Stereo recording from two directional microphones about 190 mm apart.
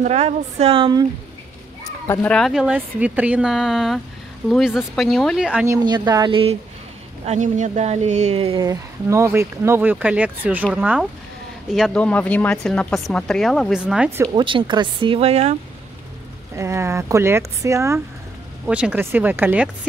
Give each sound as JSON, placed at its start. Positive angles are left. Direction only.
{"t": 0.0, "sound": "speech", "side_deg": -35}
{"t": 2.0, "sound": "speech", "side_deg": 5}
{"t": 5.7, "sound": "speech", "side_deg": -20}
{"t": 7.2, "sound": "speech", "side_deg": -40}
{"t": 8.6, "sound": "speech", "side_deg": -15}
{"t": 14.2, "sound": "speech", "side_deg": -25}
{"t": 16.5, "sound": "speech", "side_deg": -15}